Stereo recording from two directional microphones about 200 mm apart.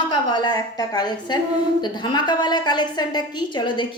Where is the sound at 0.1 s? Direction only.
20° left (ahead or behind).